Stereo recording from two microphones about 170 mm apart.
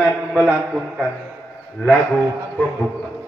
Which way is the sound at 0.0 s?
10° right (ahead or behind).